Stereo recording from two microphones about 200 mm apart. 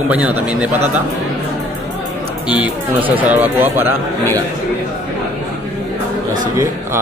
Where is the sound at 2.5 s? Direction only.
5° right (ahead or behind).